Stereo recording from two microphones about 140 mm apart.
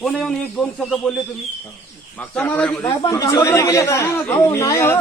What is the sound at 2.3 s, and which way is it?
Speech, 10° left (ahead or behind).